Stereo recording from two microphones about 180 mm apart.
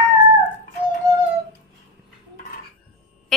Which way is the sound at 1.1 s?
20° right (ahead or behind).